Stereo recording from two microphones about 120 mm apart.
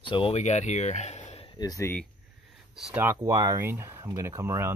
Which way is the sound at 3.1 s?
25° right (ahead or behind).